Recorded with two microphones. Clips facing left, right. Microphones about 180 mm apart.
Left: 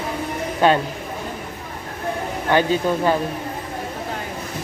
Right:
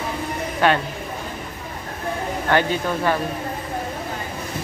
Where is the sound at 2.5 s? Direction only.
15° left (ahead or behind).